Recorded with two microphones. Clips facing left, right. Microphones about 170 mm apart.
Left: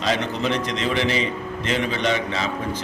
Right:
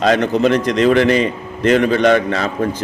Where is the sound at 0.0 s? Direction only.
50° right (ahead or behind).